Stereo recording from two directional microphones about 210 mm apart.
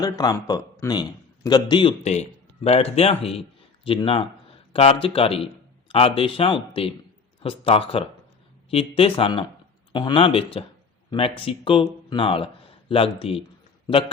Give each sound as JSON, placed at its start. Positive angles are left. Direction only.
{"t": 0.0, "sound": "speech", "side_deg": 15}